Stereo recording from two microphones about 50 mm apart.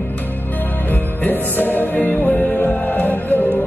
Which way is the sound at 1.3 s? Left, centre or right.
Left.